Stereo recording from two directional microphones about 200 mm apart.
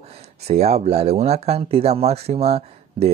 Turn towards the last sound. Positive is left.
turn(degrees=-30)  # may be behind; listen again after turning